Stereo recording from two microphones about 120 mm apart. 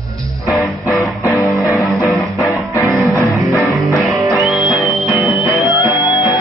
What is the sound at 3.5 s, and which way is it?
Music, 25° left (ahead or behind).